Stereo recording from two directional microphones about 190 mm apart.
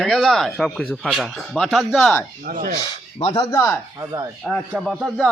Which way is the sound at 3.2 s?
30° left (ahead or behind).